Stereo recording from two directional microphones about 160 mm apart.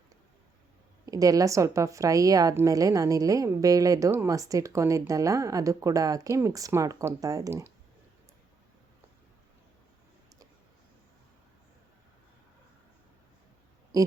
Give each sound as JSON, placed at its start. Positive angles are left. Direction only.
{"t": 1.0, "sound": "a woman's voice", "side_deg": -20}
{"t": 13.9, "sound": "speech", "side_deg": -20}